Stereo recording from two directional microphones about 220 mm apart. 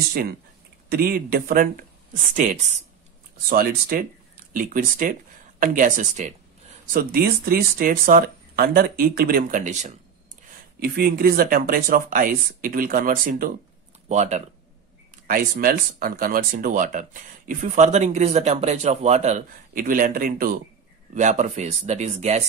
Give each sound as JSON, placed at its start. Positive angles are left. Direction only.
{"t": 0.8, "sound": "speech", "side_deg": -45}
{"t": 10.8, "sound": "speech", "side_deg": -45}